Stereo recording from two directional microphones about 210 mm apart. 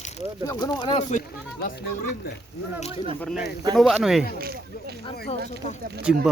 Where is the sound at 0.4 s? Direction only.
20° left (ahead or behind).